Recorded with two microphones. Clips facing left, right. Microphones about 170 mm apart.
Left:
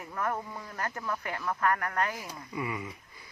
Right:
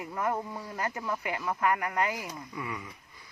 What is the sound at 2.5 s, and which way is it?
Speech, 5° left (ahead or behind).